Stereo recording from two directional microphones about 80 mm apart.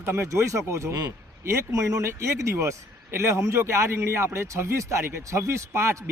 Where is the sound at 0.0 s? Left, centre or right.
Right.